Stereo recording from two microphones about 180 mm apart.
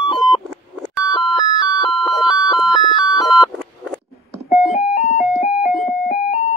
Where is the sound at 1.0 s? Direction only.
25° left (ahead or behind).